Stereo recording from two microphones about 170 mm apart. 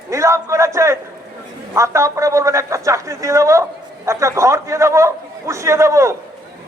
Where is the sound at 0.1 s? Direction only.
15° right (ahead or behind).